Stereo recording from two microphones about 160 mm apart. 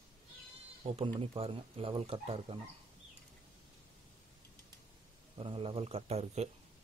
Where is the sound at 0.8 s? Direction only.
35° right (ahead or behind).